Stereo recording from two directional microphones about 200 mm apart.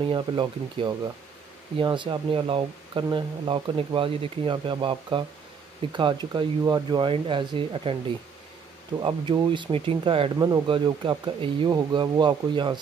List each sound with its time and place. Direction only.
0.1 s speech: 25° right (ahead or behind)
9.0 s speech: 25° right (ahead or behind)